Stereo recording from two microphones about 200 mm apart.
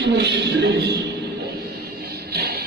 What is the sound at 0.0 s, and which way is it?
Speech, 60° right (ahead or behind).